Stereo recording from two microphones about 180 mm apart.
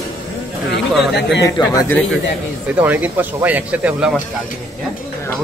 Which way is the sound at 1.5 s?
20° left (ahead or behind).